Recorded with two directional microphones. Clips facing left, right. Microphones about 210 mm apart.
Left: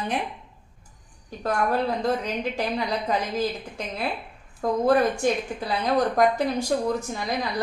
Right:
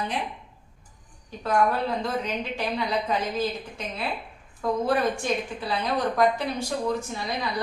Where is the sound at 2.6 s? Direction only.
40° left (ahead or behind).